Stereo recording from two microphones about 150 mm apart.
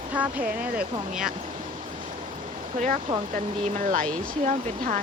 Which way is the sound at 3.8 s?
60° right (ahead or behind).